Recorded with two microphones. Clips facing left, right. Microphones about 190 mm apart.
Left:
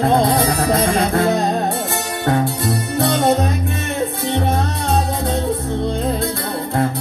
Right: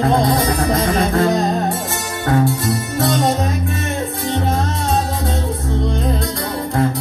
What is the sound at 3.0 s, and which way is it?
Music, 60° left (ahead or behind).